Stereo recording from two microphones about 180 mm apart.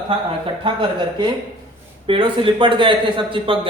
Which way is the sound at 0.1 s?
30° right (ahead or behind).